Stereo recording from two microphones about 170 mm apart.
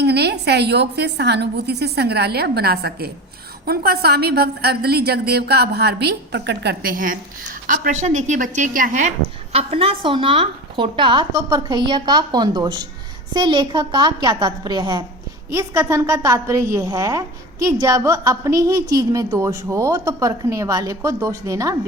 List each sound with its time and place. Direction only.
0.0 s a woman's voice: 75° right (ahead or behind); by 21.8 s 20° right (ahead or behind)